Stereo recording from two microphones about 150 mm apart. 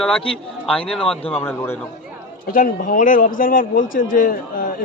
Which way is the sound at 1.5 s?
15° left (ahead or behind).